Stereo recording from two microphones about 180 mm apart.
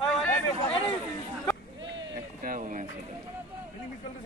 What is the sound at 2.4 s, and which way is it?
Speech, 45° right (ahead or behind).